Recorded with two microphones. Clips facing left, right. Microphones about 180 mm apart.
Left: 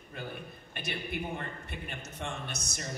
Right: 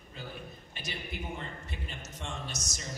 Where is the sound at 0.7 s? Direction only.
60° left (ahead or behind).